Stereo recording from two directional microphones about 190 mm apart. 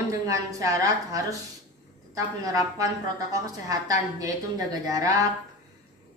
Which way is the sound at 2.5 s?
15° right (ahead or behind).